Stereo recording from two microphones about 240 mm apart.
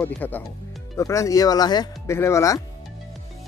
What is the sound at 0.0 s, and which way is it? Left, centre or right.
Speech, centre.